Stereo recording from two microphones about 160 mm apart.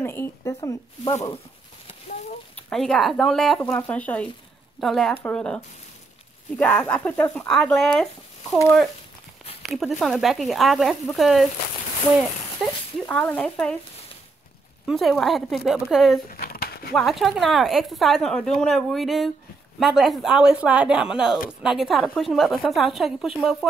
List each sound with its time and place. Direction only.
0.0 s speech: 15° left (ahead or behind)
2.7 s a woman's voice: centre (ahead or behind)
9.6 s a woman's voice: centre (ahead or behind)
12.6 s a woman's voice: centre (ahead or behind)
14.9 s a woman's voice: centre (ahead or behind)
16.3 s a sound: 65° left (ahead or behind)
16.9 s a woman's voice: centre (ahead or behind)